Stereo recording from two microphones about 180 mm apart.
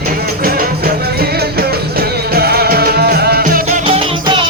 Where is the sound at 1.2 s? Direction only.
60° right (ahead or behind).